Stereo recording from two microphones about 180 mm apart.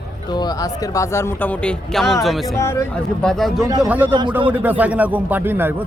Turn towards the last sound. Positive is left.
turn(degrees=-10)  # may be behind; listen again after turning